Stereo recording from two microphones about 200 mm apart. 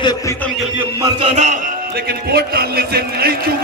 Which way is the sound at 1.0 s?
30° right (ahead or behind).